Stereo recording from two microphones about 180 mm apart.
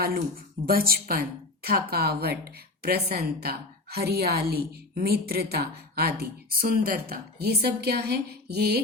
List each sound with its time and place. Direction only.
0.6 s a woman's voice: 55° right (ahead or behind)